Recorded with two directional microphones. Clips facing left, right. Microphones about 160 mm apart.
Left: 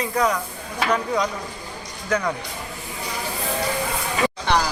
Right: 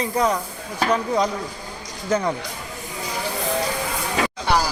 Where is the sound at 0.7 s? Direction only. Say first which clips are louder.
Right 2 dB; 35° right (ahead or behind).